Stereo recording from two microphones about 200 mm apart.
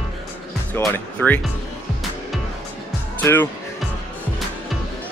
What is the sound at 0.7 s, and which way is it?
Music, 10° left (ahead or behind).